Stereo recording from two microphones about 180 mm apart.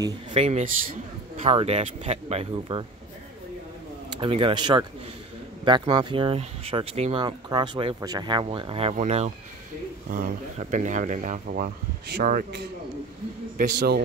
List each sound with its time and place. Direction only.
0.0 s speech: 30° right (ahead or behind)
4.1 s speech: 30° right (ahead or behind); by 11.4 s 45° right (ahead or behind)
11.4 s speech: 55° right (ahead or behind)